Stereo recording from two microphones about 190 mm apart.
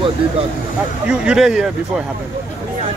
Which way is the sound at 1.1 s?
5° right (ahead or behind).